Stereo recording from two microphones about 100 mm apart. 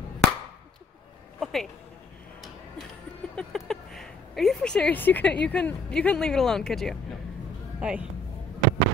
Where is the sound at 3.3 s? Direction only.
5° left (ahead or behind).